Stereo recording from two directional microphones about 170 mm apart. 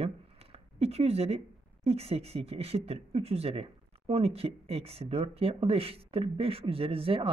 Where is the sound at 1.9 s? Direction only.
35° right (ahead or behind).